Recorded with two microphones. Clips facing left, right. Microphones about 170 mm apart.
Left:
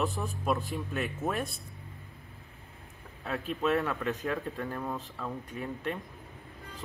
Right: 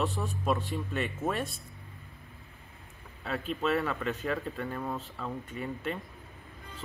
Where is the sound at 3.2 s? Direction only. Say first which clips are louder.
Left 1 dB; centre (ahead or behind).